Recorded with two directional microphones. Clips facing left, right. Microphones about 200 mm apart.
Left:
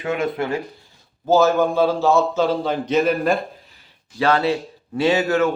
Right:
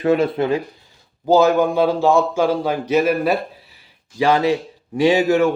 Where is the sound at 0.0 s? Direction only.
35° right (ahead or behind).